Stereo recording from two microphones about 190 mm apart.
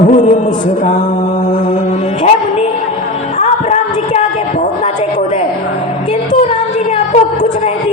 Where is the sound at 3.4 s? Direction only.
35° left (ahead or behind).